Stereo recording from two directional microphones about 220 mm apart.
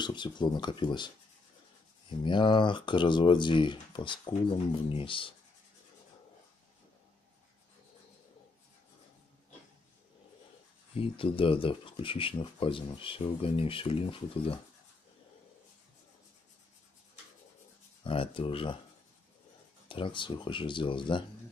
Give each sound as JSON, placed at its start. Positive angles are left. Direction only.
{"t": 0.0, "sound": "speech", "side_deg": 20}
{"t": 11.0, "sound": "speech", "side_deg": 25}
{"t": 18.0, "sound": "speech", "side_deg": 25}
{"t": 19.9, "sound": "speech", "side_deg": 20}